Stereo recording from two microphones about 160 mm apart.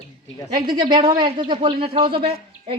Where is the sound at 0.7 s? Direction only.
30° right (ahead or behind).